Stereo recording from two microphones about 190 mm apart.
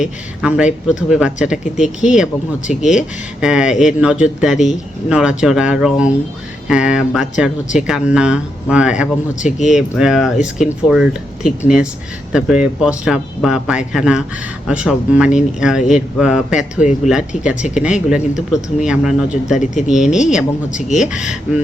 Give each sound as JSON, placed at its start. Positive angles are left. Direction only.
{"t": 0.0, "sound": "speech", "side_deg": -5}
{"t": 16.7, "sound": "speech", "side_deg": 40}
{"t": 17.1, "sound": "speech", "side_deg": -5}
{"t": 20.7, "sound": "speech", "side_deg": 40}